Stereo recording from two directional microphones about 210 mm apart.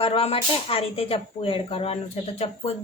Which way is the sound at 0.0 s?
25° left (ahead or behind).